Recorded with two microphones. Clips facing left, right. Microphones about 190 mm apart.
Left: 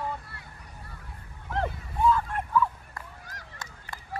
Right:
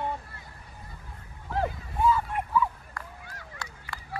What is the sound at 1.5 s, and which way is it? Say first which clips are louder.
Dog: right 1 dB; 5° right (ahead or behind).